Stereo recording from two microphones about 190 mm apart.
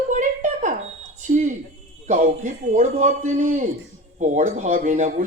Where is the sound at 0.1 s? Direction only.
40° right (ahead or behind).